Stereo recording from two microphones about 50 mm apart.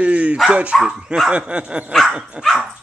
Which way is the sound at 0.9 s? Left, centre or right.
Centre.